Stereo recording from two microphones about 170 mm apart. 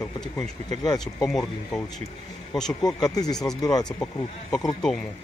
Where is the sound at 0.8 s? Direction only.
25° left (ahead or behind).